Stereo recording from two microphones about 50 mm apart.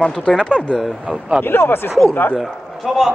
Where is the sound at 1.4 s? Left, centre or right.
Left.